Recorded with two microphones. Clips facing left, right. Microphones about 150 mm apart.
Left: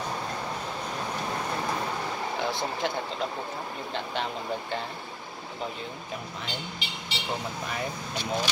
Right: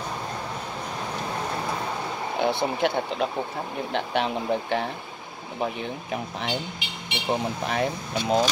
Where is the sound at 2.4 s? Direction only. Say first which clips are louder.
Right 8 dB; 65° right (ahead or behind).